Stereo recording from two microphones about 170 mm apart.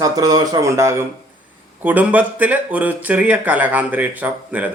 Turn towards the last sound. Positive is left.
turn(degrees=-10)  # may be behind; listen again after turning